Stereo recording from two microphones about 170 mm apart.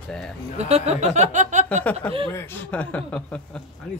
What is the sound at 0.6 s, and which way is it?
Speech, 40° right (ahead or behind).